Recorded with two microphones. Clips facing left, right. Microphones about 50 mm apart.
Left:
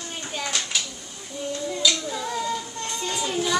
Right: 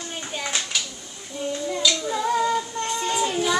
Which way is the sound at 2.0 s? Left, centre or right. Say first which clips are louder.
Right 5 dB; right.